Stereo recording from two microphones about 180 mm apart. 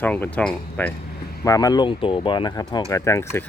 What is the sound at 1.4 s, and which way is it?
Speech, 20° left (ahead or behind).